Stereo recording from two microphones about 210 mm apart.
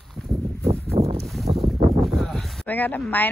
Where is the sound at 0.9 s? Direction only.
30° right (ahead or behind).